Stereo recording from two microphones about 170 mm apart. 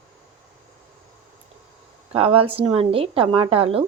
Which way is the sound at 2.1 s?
35° right (ahead or behind).